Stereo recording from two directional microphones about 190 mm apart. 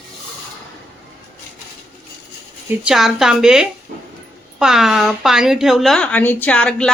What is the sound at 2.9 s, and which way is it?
A woman's voice, centre (ahead or behind).